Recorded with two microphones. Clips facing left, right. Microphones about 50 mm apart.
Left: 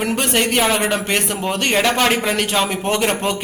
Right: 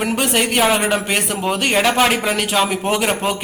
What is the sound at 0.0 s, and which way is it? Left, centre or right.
A man's voice, centre.